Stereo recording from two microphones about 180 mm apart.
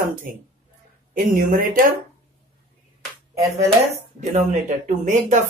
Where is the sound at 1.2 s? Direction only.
50° right (ahead or behind).